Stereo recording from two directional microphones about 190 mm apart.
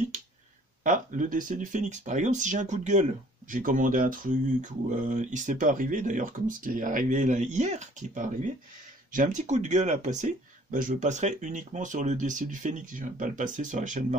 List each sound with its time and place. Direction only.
0.8 s speech: 45° right (ahead or behind)